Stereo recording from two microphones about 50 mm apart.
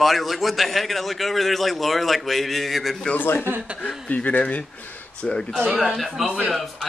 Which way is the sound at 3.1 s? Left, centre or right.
Left.